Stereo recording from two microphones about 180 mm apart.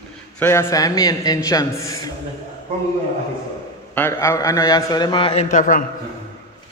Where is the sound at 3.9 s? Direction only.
15° left (ahead or behind).